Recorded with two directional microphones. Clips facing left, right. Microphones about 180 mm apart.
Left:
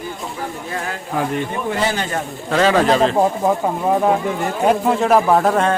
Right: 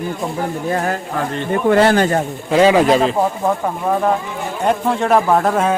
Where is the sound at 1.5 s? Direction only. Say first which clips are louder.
Right 8 dB; 60° right (ahead or behind).